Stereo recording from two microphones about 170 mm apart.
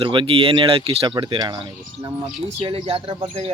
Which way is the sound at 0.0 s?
30° right (ahead or behind).